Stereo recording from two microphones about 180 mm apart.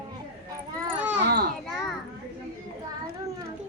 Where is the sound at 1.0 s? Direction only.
5° right (ahead or behind).